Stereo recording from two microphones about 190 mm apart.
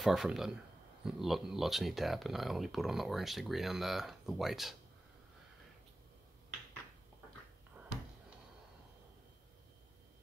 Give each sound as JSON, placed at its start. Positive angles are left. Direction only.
{"t": 0.0, "sound": "speech", "side_deg": 0}